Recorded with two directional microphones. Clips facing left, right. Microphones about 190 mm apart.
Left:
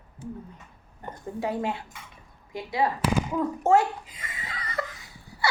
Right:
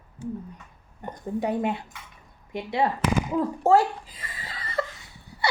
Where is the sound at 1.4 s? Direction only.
20° right (ahead or behind).